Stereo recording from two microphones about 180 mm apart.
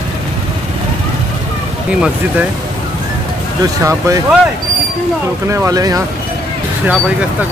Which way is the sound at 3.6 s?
15° right (ahead or behind).